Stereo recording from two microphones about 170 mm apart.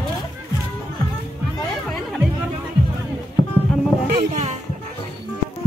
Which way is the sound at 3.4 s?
30° left (ahead or behind).